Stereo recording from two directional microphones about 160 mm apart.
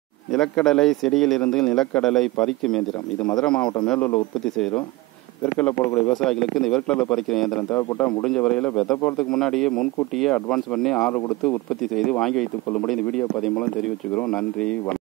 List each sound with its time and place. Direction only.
0.3 s a man's voice: 5° left (ahead or behind)